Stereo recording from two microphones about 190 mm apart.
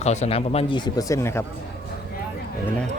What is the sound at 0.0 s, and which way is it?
A man's voice, 35° left (ahead or behind).